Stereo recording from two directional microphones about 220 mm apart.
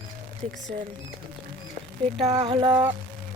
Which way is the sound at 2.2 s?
25° right (ahead or behind).